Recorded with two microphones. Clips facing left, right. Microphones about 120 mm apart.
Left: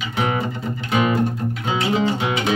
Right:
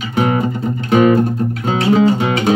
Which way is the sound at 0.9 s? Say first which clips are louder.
Right 9 dB; 45° right (ahead or behind).